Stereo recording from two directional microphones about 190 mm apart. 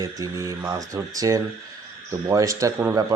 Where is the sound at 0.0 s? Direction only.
15° right (ahead or behind).